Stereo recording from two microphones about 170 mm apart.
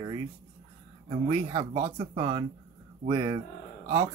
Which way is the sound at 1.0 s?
25° right (ahead or behind).